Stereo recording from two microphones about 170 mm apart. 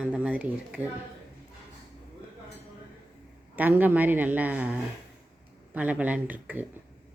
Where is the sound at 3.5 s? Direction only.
10° right (ahead or behind).